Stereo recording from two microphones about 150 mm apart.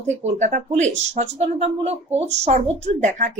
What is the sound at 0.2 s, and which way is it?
A woman's voice, 50° right (ahead or behind).